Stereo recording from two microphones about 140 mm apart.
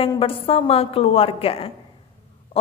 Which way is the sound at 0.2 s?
40° left (ahead or behind).